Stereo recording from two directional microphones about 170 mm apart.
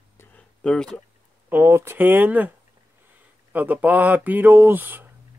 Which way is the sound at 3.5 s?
10° right (ahead or behind).